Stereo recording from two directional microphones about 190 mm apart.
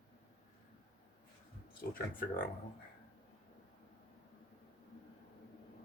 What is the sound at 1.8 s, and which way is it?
Speech, 50° left (ahead or behind).